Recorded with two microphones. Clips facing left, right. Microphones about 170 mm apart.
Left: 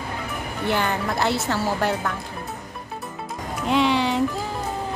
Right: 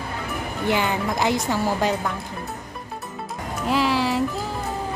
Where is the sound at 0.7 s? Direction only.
15° right (ahead or behind).